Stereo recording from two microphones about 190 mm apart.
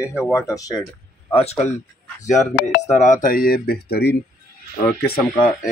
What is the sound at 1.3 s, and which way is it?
Speech, 35° left (ahead or behind).